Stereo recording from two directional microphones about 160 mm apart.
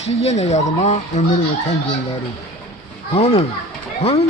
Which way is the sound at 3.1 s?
40° left (ahead or behind).